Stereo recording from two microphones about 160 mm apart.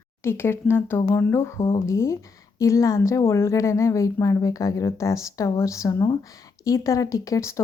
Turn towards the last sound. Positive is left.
turn(degrees=20)  # may be behind; listen again after turning